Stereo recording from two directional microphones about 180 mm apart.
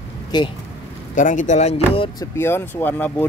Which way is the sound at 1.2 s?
45° left (ahead or behind).